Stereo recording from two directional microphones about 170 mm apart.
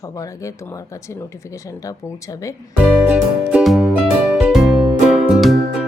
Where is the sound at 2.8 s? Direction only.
5° right (ahead or behind).